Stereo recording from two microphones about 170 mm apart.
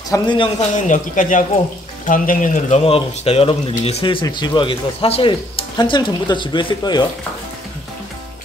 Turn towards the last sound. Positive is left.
turn(degrees=25)  # may be behind; listen again after turning